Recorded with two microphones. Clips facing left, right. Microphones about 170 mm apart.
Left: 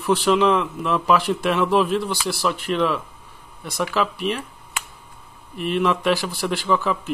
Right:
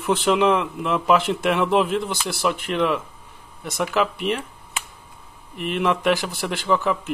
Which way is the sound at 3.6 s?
20° right (ahead or behind).